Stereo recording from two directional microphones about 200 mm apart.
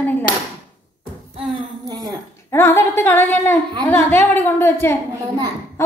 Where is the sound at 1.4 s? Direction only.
20° right (ahead or behind).